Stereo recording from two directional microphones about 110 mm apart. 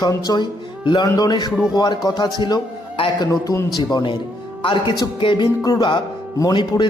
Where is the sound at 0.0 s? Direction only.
35° left (ahead or behind).